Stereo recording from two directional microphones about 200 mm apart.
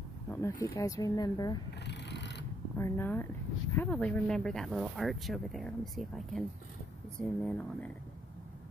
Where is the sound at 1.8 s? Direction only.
60° left (ahead or behind).